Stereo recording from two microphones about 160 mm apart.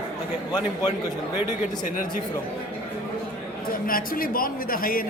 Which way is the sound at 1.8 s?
55° left (ahead or behind).